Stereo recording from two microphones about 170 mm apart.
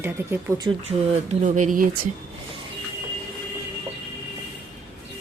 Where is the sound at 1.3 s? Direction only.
45° right (ahead or behind).